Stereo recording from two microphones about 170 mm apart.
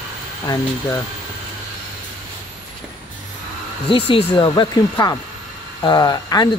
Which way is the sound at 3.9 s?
30° left (ahead or behind).